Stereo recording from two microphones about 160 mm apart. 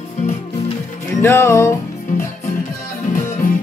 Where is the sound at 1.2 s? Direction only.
15° left (ahead or behind).